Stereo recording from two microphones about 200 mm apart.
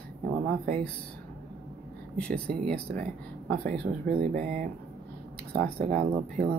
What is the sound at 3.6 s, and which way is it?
Speech, 45° right (ahead or behind).